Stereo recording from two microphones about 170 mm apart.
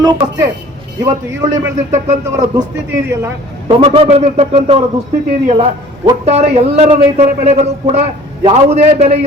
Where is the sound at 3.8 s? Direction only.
40° right (ahead or behind).